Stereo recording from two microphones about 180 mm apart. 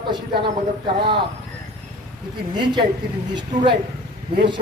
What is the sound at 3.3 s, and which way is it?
Speech, 25° right (ahead or behind).